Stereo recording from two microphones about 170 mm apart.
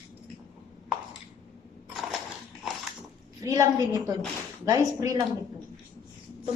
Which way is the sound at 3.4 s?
20° right (ahead or behind).